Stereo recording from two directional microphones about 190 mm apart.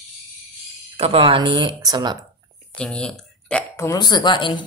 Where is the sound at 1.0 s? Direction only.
30° right (ahead or behind).